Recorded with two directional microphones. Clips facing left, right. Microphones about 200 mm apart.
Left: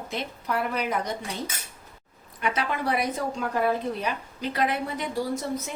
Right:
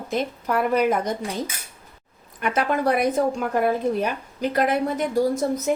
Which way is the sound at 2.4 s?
50° right (ahead or behind).